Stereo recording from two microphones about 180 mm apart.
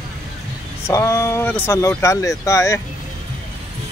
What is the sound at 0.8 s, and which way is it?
Speech, 15° left (ahead or behind).